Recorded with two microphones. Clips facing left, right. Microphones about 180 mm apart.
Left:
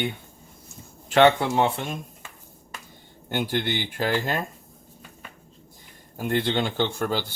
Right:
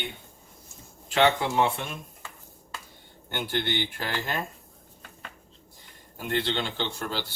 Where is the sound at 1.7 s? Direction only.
35° left (ahead or behind).